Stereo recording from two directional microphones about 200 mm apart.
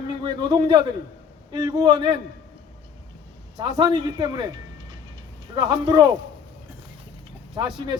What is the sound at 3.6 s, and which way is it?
A man's voice, 20° right (ahead or behind).